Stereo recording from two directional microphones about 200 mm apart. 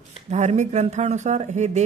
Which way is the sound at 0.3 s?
35° right (ahead or behind).